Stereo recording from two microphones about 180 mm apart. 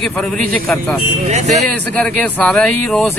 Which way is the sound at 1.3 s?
40° right (ahead or behind).